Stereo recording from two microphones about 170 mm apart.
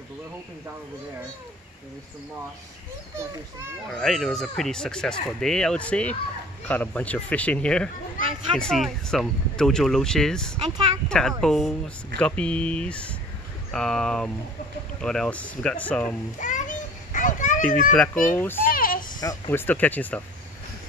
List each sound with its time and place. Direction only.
3.9 s speech: centre (ahead or behind)
16.3 s children playing: 45° left (ahead or behind)
17.9 s speech: 5° left (ahead or behind)
18.7 s a sound: 55° left (ahead or behind)
19.1 s speech: 25° left (ahead or behind)
19.5 s speech: 10° left (ahead or behind)